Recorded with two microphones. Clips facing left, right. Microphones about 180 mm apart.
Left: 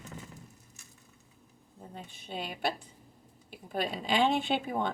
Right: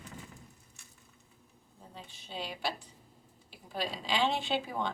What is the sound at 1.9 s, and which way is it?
A woman's voice, 50° left (ahead or behind).